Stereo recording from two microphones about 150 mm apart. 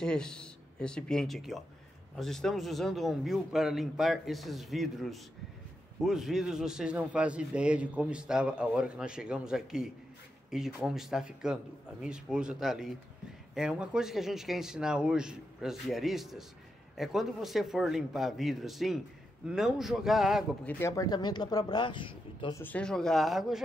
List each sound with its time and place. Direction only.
0.0 s a man's voice: 5° left (ahead or behind)
20.6 s speech: 10° left (ahead or behind)
20.9 s speech: 25° left (ahead or behind)
22.5 s a man's voice: 10° left (ahead or behind)